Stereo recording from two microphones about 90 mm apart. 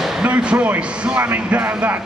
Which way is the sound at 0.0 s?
10° right (ahead or behind).